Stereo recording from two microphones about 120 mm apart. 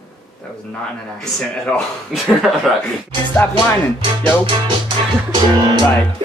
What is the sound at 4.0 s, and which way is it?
Music, 45° right (ahead or behind).